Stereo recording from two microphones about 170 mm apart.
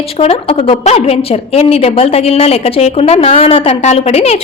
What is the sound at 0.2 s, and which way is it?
A woman's voice, 35° left (ahead or behind).